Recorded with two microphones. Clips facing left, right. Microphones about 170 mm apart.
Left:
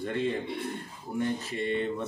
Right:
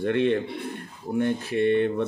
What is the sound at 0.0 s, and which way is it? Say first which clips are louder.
Speech: right 7 dB; 70° right (ahead or behind).